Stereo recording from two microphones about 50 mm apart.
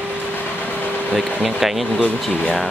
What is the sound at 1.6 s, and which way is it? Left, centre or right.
Speech, centre.